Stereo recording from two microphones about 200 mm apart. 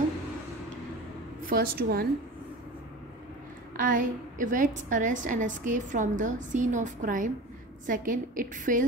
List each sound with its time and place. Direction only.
1.4 s a woman's voice: 45° right (ahead or behind)
3.7 s a woman's voice: 40° right (ahead or behind)